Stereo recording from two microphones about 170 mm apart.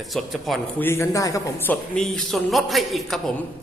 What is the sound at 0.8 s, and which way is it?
A man's voice, 15° left (ahead or behind).